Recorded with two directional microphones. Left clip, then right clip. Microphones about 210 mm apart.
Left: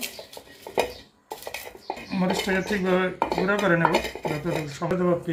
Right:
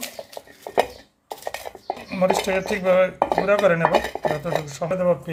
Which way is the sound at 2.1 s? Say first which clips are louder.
Right 6 dB; 55° right (ahead or behind).